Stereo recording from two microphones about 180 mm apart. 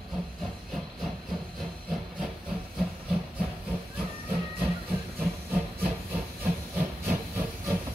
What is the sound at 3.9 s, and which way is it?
Hiss, 10° right (ahead or behind).